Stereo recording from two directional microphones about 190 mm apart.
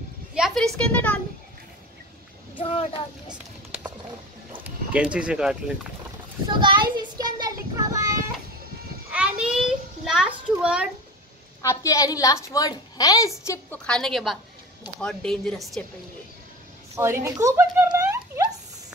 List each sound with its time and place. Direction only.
0.3 s a woman's voice: centre (ahead or behind)
4.5 s speech: 5° right (ahead or behind)
6.4 s child singing: 25° right (ahead or behind)
9.1 s a sound: 5° right (ahead or behind)
11.6 s a woman's voice: 15° left (ahead or behind)
13.5 s a woman's voice: 5° left (ahead or behind)
16.9 s speech: 15° right (ahead or behind)